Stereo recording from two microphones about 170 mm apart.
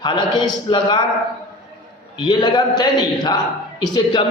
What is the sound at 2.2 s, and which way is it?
A man's voice, 25° left (ahead or behind).